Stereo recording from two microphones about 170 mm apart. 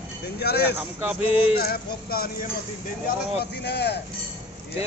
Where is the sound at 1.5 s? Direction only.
60° left (ahead or behind).